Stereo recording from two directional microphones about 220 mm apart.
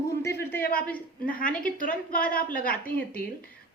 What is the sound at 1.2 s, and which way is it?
Speech, 40° left (ahead or behind).